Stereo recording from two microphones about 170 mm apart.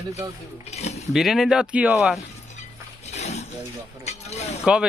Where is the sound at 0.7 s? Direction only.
40° left (ahead or behind).